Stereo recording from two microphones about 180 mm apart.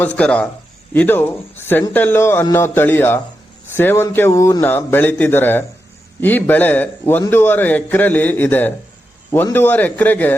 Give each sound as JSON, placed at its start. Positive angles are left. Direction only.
{"t": 0.2, "sound": "a man's voice", "side_deg": 5}